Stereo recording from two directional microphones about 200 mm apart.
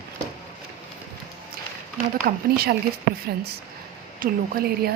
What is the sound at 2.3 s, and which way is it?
Speech, 50° right (ahead or behind).